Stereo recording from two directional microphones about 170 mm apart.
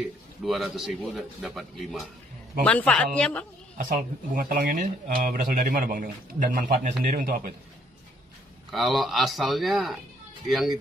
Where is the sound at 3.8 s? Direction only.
55° right (ahead or behind).